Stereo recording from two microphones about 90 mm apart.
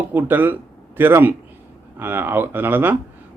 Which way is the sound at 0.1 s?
20° right (ahead or behind).